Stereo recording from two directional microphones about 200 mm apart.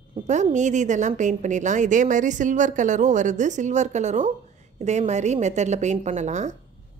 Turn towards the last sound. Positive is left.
turn(degrees=-35)  # may be behind; listen again after turning